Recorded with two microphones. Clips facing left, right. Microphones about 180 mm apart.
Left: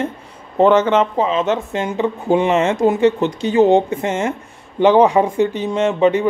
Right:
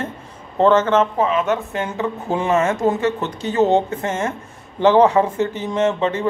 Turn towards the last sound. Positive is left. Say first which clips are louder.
# left 4 dB
turn(degrees=15)  # may be behind; listen again after turning